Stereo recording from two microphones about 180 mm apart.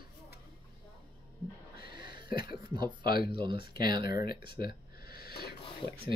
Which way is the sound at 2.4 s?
25° right (ahead or behind).